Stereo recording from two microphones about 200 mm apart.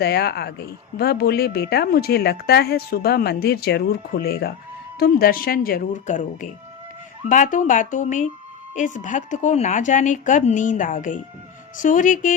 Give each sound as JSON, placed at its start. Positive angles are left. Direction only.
{"t": 0.0, "sound": "a woman's voice", "side_deg": 55}